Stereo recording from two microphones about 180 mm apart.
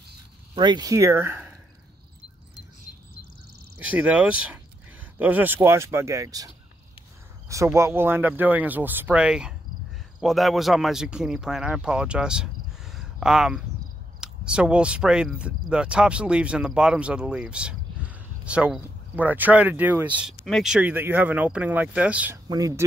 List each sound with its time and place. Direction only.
0.6 s speech: 25° right (ahead or behind)
3.7 s speech: 10° right (ahead or behind)
22.5 s speech: 20° right (ahead or behind)